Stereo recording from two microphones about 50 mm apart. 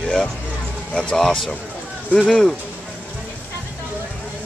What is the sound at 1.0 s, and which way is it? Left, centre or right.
Speech, centre.